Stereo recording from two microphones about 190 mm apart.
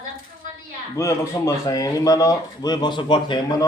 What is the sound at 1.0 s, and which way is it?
A man's voice, 15° left (ahead or behind).